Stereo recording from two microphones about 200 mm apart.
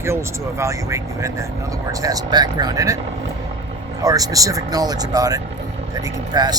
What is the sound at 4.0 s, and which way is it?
Speech, 20° right (ahead or behind).